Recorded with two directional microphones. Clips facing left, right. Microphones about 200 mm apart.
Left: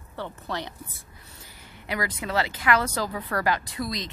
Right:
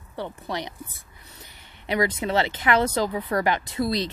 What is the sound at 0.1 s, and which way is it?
A woman's voice, 15° right (ahead or behind).